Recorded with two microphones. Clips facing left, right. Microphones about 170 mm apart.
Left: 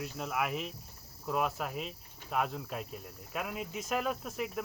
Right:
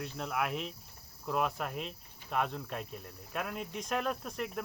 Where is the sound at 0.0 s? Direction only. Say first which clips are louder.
Even; 5° left (ahead or behind).